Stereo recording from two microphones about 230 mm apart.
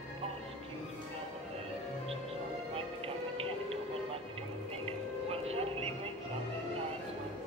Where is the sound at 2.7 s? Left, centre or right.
Right.